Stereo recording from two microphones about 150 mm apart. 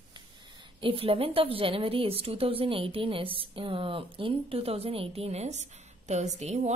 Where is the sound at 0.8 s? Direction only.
40° right (ahead or behind).